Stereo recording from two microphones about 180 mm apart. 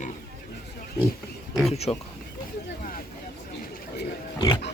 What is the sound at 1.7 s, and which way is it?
Speech, 35° left (ahead or behind).